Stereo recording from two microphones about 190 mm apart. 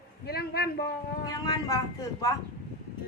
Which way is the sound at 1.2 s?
20° left (ahead or behind).